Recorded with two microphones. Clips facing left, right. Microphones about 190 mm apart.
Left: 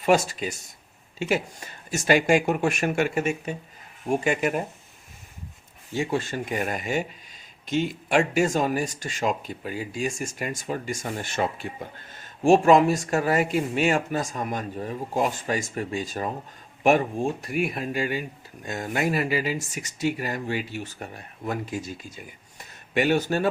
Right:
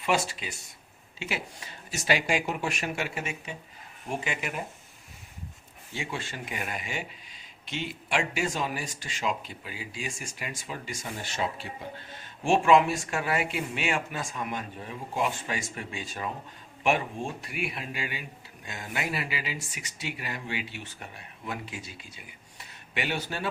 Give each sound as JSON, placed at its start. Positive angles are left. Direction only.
{"t": 0.0, "sound": "speech", "side_deg": 45}
{"t": 5.9, "sound": "speech", "side_deg": 45}